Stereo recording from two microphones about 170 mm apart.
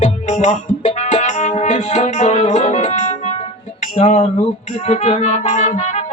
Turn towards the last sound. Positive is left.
turn(degrees=45)  # may be behind; listen again after turning